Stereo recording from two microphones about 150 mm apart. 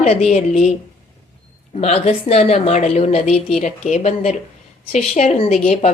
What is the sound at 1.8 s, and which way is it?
A woman's voice, 45° left (ahead or behind).